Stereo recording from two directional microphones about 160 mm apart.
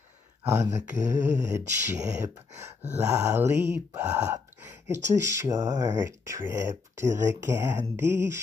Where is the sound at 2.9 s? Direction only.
15° right (ahead or behind).